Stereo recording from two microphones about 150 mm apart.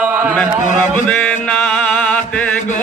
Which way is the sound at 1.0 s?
5° left (ahead or behind).